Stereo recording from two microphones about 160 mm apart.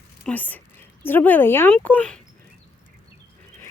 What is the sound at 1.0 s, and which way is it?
A woman's voice, 10° left (ahead or behind).